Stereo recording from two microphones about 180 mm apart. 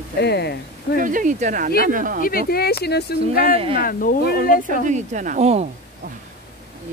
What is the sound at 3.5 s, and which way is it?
Speech, 30° right (ahead or behind).